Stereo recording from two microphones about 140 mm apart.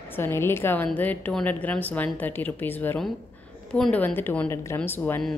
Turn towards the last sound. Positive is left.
turn(degrees=15)  # may be behind; listen again after turning